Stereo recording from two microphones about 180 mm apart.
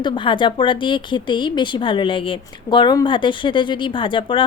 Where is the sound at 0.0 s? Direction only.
25° left (ahead or behind).